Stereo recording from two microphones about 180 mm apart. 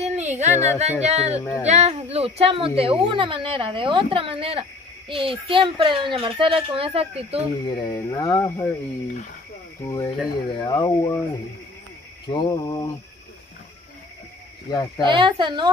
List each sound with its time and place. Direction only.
0.0 s speech: 40° right (ahead or behind)
7.6 s speech: 25° left (ahead or behind)
9.8 s speech: 20° left (ahead or behind)
12.3 s speech: 25° left (ahead or behind)
14.7 s speech: 20° left (ahead or behind)
15.0 s speech: 25° right (ahead or behind)